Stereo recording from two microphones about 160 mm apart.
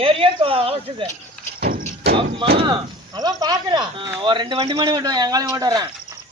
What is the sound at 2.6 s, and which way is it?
A man's voice, 25° right (ahead or behind).